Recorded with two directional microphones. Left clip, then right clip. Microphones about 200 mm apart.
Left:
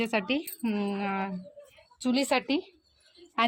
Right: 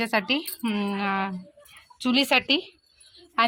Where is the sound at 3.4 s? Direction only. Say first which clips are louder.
Right 4 dB; 15° left (ahead or behind).